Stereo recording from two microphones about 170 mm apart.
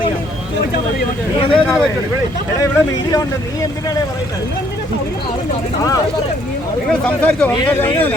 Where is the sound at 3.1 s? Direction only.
20° left (ahead or behind).